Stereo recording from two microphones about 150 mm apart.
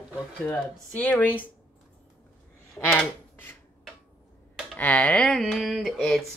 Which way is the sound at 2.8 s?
15° left (ahead or behind).